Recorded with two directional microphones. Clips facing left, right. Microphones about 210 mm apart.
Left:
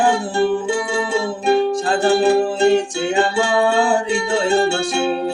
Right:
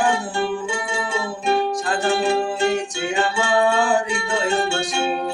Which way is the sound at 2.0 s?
30° left (ahead or behind).